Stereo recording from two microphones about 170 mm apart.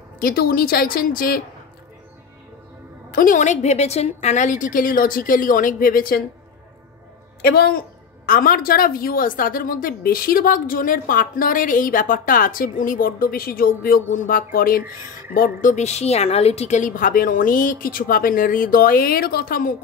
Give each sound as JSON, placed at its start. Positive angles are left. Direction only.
{"t": 0.2, "sound": "a woman's voice", "side_deg": 60}
{"t": 3.1, "sound": "a woman's voice", "side_deg": 55}
{"t": 7.4, "sound": "a woman's voice", "side_deg": 65}
{"t": 8.3, "sound": "a woman's voice", "side_deg": 55}